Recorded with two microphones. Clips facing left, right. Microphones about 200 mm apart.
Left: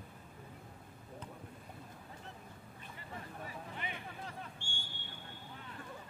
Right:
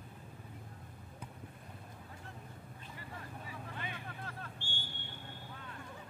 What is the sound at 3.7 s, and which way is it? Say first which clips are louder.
Vehicle: even; 15° left (ahead or behind).